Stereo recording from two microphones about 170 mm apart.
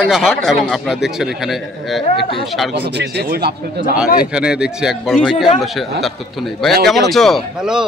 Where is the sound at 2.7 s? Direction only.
80° right.